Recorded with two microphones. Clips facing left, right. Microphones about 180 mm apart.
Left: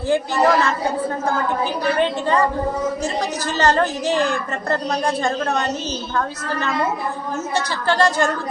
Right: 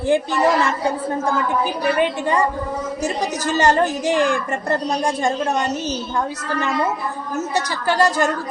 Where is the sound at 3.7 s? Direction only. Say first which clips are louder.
Right 1 dB; 15° right (ahead or behind).